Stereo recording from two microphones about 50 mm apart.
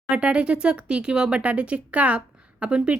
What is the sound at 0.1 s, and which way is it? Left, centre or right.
Speech, right.